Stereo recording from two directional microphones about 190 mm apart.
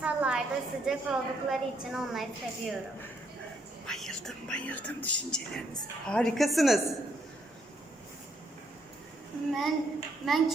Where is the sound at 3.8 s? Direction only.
Centre (ahead or behind).